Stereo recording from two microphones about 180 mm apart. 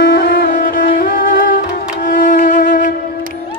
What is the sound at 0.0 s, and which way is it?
Music, 55° left (ahead or behind).